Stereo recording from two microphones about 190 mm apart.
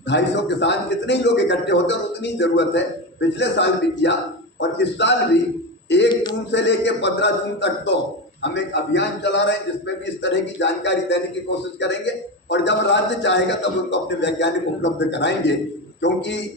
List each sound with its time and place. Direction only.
0.1 s a man's voice: 65° left (ahead or behind)